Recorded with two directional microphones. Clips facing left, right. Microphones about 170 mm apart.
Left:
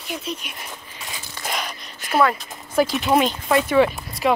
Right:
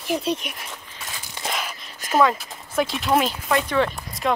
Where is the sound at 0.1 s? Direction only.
30° right (ahead or behind).